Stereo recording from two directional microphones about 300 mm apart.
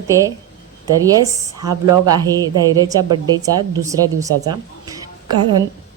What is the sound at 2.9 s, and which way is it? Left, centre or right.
A woman's voice, centre.